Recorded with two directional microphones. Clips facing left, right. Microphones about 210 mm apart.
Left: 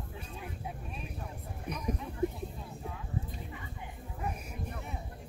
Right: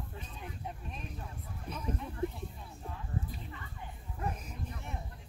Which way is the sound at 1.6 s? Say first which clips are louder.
Left 3 dB; 15° left (ahead or behind).